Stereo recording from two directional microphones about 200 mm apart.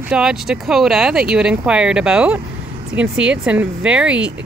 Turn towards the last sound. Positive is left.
turn(degrees=-5)  # may be behind; listen again after turning